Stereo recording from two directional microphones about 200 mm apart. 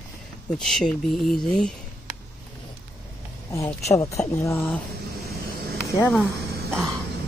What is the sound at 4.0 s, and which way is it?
Speech, 15° left (ahead or behind).